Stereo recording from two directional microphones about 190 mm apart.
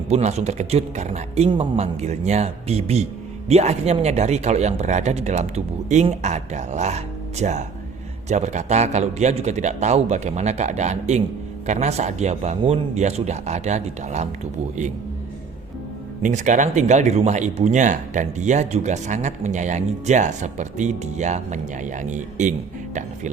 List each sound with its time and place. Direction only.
0.1 s speech: 35° right (ahead or behind)
16.2 s speech: 40° right (ahead or behind)